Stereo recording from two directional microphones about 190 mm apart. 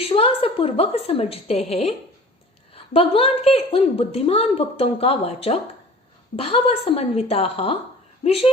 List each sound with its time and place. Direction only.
0.0 s a woman's voice: 30° left (ahead or behind)